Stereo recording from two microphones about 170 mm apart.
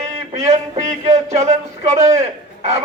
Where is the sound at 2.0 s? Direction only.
20° right (ahead or behind).